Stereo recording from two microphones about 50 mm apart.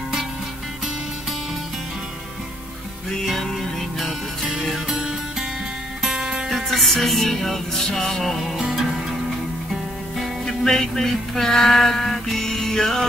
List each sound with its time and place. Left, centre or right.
6.0 s music: centre
6.5 s music: centre
10.4 s music: centre